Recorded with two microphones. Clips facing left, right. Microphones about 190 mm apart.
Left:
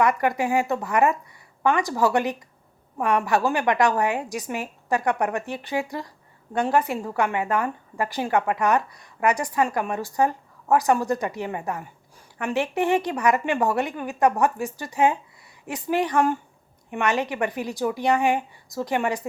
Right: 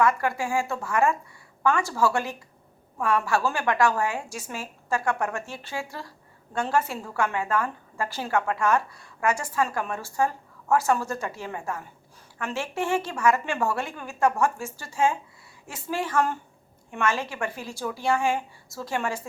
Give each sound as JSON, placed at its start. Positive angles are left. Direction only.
{"t": 0.0, "sound": "a woman's voice", "side_deg": 20}